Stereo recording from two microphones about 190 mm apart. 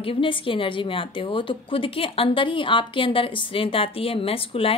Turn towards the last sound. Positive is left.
turn(degrees=30)  # may be behind; listen again after turning